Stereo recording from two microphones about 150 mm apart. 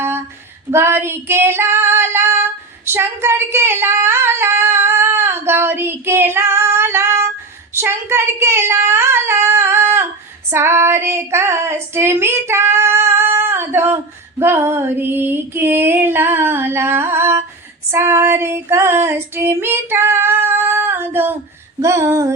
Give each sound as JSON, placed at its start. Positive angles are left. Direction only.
{"t": 0.7, "sound": "female singing", "side_deg": -15}
{"t": 7.7, "sound": "child singing", "side_deg": -15}
{"t": 10.5, "sound": "female singing", "side_deg": -15}